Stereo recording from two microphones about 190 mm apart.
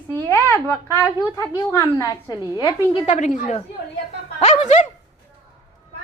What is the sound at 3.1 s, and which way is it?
A woman's voice, 40° left (ahead or behind).